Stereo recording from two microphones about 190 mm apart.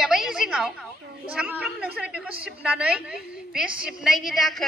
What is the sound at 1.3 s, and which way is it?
A woman's voice, 5° right (ahead or behind).